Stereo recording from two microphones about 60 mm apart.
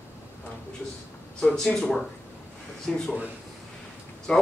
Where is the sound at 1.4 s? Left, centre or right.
Centre.